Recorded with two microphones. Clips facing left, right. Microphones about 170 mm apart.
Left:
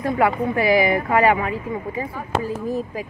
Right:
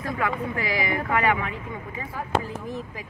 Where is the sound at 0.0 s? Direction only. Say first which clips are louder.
Left 8 dB; 30° left (ahead or behind).